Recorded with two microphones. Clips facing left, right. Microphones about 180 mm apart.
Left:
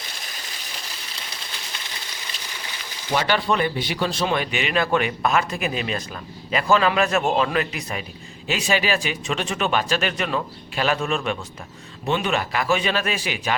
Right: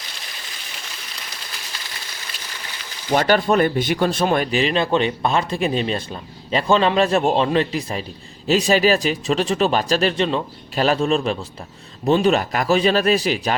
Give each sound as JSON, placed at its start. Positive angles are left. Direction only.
{"t": 3.1, "sound": "speech", "side_deg": -45}